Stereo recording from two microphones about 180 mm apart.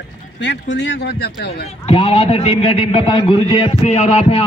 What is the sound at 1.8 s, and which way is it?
A man's voice, 35° left (ahead or behind).